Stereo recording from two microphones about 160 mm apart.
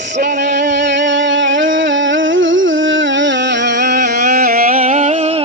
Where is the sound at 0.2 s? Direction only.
90° right.